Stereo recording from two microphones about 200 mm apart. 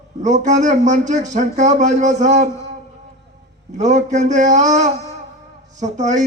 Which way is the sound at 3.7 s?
35° right (ahead or behind).